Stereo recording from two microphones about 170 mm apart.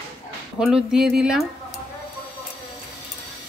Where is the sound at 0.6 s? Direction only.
5° right (ahead or behind).